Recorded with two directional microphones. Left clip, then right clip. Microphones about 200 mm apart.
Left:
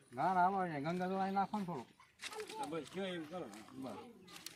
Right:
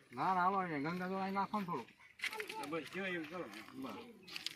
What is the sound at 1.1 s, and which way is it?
Speech, 10° left (ahead or behind).